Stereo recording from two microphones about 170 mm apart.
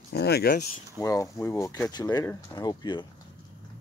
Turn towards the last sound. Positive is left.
turn(degrees=25)  # may be behind; listen again after turning